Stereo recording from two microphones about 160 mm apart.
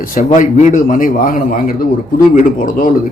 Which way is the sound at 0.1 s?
55° left (ahead or behind).